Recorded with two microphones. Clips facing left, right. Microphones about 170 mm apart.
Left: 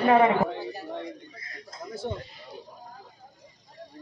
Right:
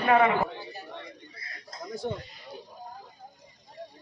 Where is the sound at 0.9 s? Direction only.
45° left (ahead or behind).